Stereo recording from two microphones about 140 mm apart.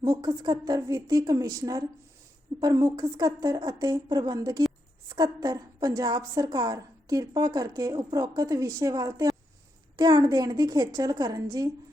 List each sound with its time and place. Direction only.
0.0 s a woman's voice: 30° right (ahead or behind)